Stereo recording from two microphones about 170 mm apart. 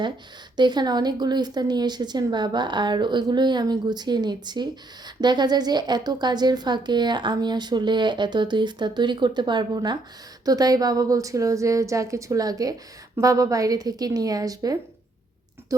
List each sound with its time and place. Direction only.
0.5 s speech: 25° right (ahead or behind)